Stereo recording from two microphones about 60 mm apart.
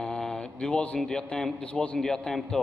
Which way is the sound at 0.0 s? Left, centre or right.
Centre.